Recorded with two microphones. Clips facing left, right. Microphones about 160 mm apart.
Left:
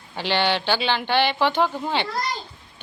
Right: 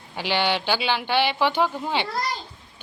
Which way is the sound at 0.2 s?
10° right (ahead or behind).